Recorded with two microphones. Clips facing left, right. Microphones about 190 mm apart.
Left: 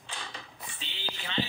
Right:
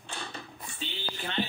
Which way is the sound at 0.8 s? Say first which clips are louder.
Right 5 dB; 50° right (ahead or behind).